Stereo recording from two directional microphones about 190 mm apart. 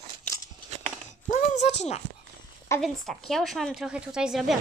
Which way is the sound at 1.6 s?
35° left (ahead or behind).